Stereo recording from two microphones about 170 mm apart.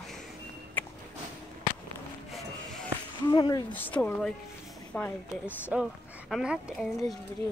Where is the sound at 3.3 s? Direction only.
25° left (ahead or behind).